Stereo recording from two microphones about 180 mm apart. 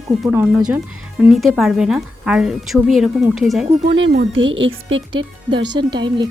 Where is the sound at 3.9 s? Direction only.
85° right.